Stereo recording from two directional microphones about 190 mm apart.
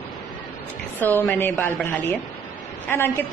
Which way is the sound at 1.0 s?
10° left (ahead or behind).